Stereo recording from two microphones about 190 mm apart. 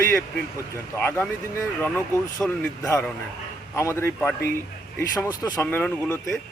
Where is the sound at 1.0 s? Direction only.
10° left (ahead or behind).